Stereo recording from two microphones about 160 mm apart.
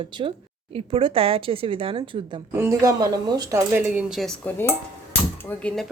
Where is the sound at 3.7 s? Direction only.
10° right (ahead or behind).